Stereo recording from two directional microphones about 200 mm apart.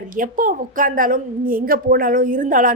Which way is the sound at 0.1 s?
45° right (ahead or behind).